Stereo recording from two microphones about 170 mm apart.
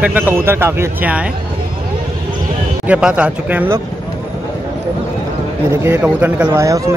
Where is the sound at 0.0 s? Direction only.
10° right (ahead or behind).